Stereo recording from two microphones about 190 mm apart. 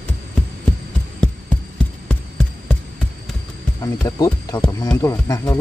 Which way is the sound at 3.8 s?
20° left (ahead or behind).